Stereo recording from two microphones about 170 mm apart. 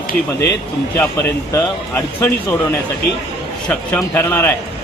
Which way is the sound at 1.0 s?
15° left (ahead or behind).